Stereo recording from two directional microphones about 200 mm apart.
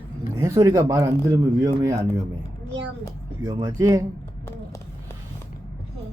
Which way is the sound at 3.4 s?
15° right (ahead or behind).